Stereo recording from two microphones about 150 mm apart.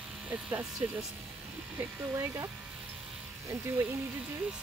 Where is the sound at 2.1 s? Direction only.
20° right (ahead or behind).